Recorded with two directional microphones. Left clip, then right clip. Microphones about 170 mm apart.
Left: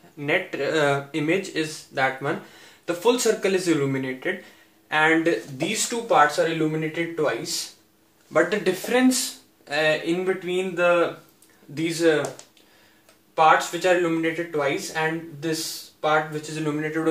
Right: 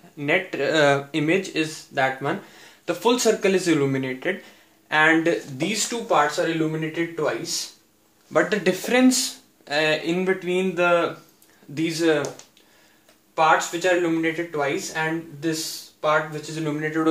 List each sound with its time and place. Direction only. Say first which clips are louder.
0.2 s speech: right 2 dB; 35° right (ahead or behind)
5.9 s speech: left 3 dB; 10° right (ahead or behind)
8.3 s speech: even; 40° right (ahead or behind)
11.7 s speech: even; 25° right (ahead or behind)
13.3 s speech: left 1 dB; 10° right (ahead or behind)